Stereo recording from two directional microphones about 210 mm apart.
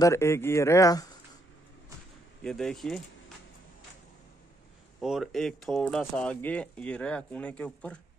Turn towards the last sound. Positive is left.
turn(degrees=5)  # may be behind; listen again after turning